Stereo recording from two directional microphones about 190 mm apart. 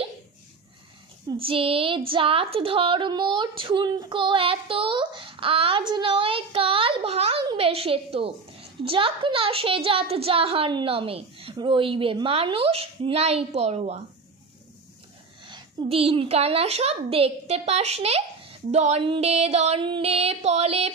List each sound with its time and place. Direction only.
1.3 s a woman's voice: 30° right (ahead or behind)
15.4 s a woman's voice: 30° right (ahead or behind)